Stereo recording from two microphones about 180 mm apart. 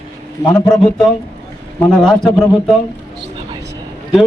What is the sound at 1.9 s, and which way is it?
Speech, 5° left (ahead or behind).